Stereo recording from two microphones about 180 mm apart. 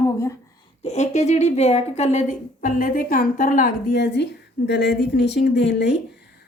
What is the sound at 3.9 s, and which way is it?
Speech, 70° left (ahead or behind).